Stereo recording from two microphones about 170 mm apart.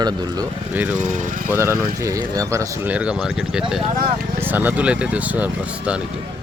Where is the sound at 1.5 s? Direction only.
15° right (ahead or behind).